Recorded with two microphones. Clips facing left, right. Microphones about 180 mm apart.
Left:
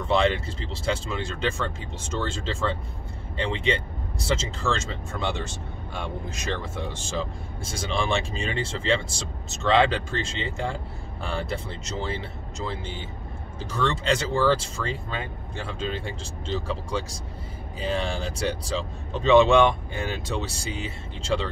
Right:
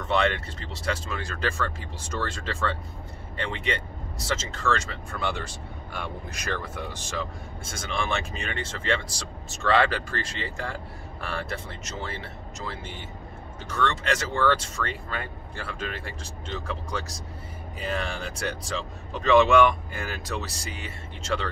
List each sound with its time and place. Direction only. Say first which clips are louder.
0.0 s speech: left 2 dB; 30° left (ahead or behind)